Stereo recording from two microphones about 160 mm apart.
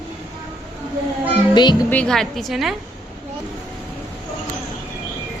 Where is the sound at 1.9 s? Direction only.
5° left (ahead or behind).